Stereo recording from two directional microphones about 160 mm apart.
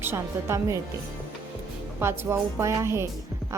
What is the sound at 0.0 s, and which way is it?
Speech, 15° right (ahead or behind).